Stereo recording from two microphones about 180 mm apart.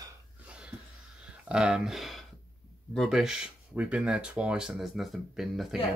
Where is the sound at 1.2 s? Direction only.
5° right (ahead or behind).